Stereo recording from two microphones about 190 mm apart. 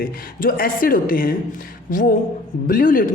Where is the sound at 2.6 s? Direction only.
45° left (ahead or behind).